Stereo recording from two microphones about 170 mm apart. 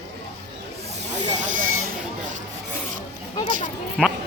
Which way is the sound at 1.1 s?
50° right (ahead or behind).